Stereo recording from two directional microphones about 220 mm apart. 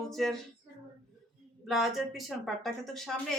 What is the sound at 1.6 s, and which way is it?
A woman's voice, centre (ahead or behind).